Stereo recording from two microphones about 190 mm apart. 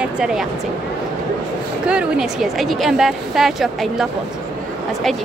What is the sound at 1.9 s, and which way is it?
A woman's voice, 5° right (ahead or behind).